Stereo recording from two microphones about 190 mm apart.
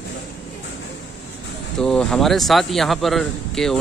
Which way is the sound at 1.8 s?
5° left (ahead or behind).